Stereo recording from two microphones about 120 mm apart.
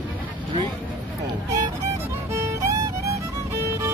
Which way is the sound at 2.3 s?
25° right (ahead or behind).